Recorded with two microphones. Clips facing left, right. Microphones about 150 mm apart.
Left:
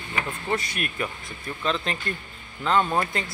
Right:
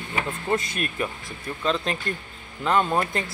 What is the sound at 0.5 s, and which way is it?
Speech, 25° right (ahead or behind).